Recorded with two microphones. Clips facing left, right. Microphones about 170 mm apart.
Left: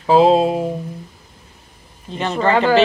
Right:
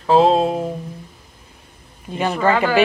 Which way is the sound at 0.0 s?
5° left (ahead or behind).